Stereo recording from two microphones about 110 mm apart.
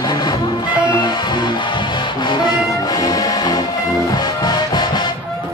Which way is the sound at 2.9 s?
35° left (ahead or behind).